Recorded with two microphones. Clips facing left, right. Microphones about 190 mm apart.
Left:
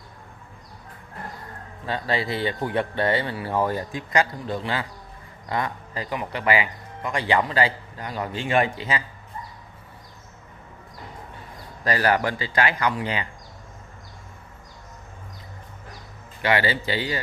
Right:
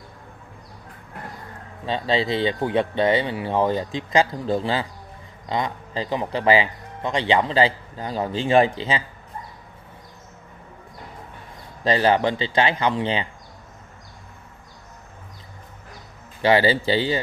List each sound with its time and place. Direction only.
1.9 s speech: 20° right (ahead or behind)
11.8 s speech: 25° right (ahead or behind)
16.4 s speech: 30° right (ahead or behind)